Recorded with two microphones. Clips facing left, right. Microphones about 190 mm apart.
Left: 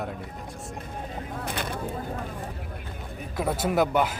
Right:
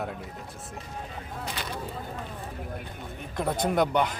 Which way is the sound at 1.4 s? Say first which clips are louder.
Left 4 dB; 55° left (ahead or behind).